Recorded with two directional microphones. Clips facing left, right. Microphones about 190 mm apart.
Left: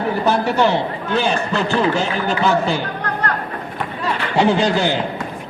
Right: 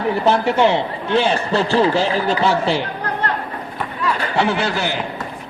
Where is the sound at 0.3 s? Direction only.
20° right (ahead or behind).